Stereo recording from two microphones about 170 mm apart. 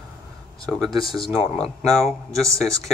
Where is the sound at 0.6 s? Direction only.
Centre (ahead or behind).